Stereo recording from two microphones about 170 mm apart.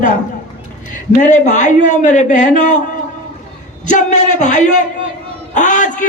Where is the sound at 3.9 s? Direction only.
45° left (ahead or behind).